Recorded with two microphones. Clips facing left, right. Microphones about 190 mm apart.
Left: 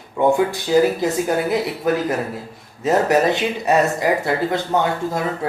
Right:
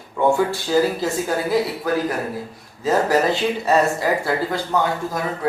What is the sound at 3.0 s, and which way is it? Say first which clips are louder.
Speech: left 1 dB; 20° left (ahead or behind).